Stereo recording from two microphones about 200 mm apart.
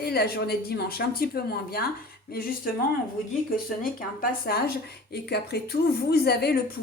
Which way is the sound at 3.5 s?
45° left (ahead or behind).